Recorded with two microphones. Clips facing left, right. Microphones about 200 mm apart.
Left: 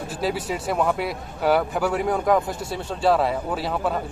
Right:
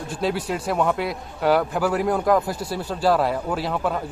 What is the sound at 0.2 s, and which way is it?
Speech, centre (ahead or behind).